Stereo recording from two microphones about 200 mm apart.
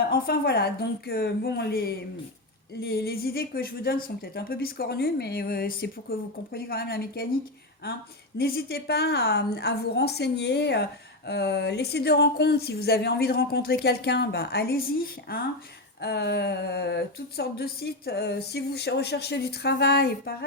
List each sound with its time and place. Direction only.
0.1 s a woman's voice: 50° left (ahead or behind)
8.4 s a woman's voice: 50° left (ahead or behind)